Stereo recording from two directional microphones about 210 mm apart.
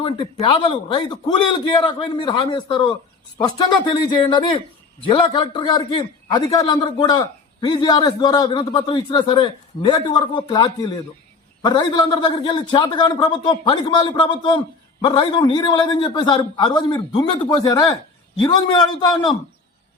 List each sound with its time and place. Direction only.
0.0 s a man's voice: 25° left (ahead or behind)